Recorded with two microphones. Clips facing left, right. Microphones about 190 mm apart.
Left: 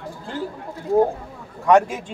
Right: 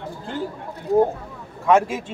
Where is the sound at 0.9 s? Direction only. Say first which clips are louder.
Even; 20° right (ahead or behind).